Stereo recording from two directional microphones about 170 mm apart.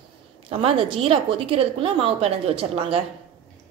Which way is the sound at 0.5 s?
35° right (ahead or behind).